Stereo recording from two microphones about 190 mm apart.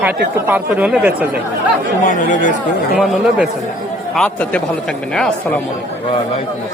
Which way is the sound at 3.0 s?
Centre (ahead or behind).